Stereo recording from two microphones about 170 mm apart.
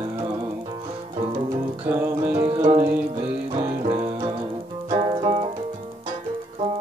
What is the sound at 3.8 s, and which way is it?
Music, 35° right (ahead or behind).